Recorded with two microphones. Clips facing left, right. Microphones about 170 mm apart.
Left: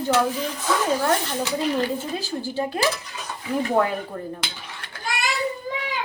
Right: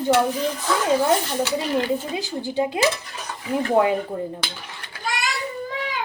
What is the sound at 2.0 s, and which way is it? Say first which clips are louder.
Speech: right 1 dB; 20° right (ahead or behind).